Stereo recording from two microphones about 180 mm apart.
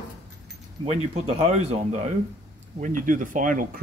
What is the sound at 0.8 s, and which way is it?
Speech, 35° right (ahead or behind).